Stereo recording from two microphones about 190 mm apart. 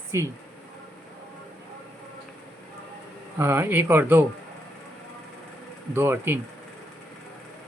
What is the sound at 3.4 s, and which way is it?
Speech, 10° right (ahead or behind).